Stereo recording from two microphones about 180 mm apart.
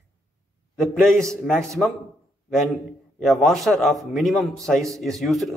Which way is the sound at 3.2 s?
Centre (ahead or behind).